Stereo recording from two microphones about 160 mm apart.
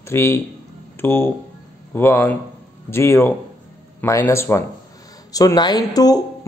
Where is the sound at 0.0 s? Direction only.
15° left (ahead or behind).